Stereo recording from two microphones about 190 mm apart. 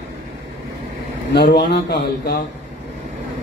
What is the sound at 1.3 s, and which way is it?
A man's voice, 60° left (ahead or behind).